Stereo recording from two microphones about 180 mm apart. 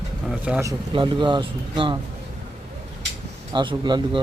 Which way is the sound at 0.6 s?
25° right (ahead or behind).